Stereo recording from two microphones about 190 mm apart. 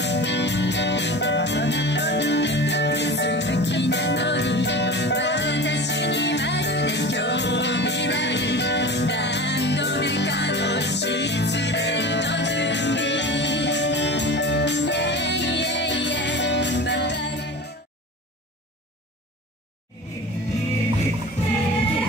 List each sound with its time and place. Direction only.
0.0 s music: 65° left (ahead or behind)